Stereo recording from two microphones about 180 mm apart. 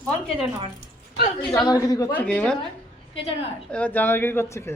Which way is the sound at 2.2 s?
5° left (ahead or behind).